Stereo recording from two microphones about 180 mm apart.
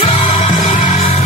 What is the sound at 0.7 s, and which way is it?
Music, 40° left (ahead or behind).